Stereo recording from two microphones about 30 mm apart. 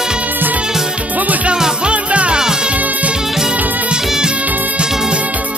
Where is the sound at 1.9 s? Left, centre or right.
Right.